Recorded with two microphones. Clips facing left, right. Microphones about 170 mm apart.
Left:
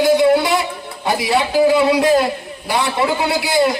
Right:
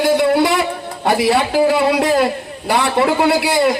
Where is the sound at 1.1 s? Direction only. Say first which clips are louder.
Right 3 dB; 60° right (ahead or behind).